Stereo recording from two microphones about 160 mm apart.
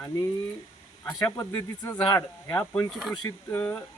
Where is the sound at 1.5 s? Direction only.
15° left (ahead or behind).